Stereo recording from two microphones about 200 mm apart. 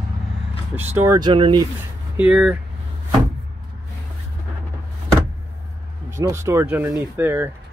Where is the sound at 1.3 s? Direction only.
25° right (ahead or behind).